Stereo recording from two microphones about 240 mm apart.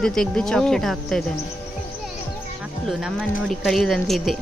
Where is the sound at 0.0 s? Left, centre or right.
Centre.